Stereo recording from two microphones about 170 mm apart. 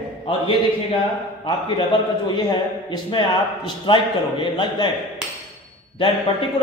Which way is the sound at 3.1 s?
30° left (ahead or behind).